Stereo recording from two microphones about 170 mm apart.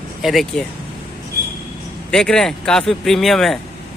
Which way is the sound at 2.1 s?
5° left (ahead or behind).